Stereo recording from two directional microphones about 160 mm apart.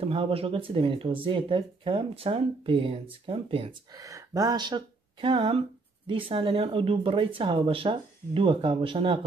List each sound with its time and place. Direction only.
0.0 s speech: 35° right (ahead or behind)
3.9 s speech: 20° right (ahead or behind)